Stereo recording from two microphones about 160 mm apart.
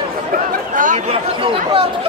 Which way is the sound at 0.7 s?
55° right (ahead or behind).